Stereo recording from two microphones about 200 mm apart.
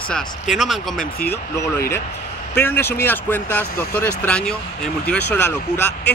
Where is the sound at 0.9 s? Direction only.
50° left (ahead or behind).